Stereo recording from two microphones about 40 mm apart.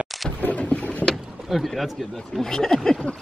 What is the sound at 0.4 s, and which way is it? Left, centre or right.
Boat, left.